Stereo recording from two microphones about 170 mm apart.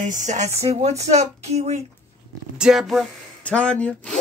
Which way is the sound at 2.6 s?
5° right (ahead or behind).